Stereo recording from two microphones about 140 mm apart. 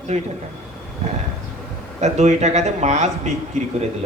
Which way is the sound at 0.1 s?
50° right (ahead or behind).